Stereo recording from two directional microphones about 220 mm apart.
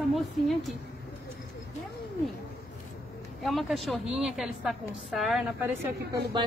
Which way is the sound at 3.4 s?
Centre (ahead or behind).